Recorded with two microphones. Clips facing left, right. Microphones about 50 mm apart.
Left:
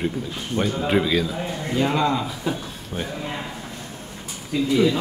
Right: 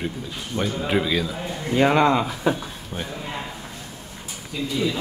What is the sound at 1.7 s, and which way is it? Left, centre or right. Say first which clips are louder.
Speech: right 4 dB; right.